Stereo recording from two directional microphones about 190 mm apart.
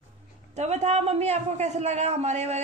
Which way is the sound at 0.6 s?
35° right (ahead or behind).